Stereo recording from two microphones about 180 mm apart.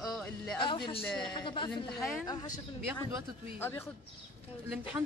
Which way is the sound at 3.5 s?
15° left (ahead or behind).